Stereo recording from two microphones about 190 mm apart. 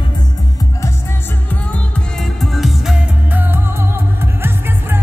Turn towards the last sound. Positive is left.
turn(degrees=-10)  # may be behind; listen again after turning